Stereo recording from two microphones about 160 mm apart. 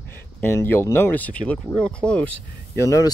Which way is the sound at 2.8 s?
20° left (ahead or behind).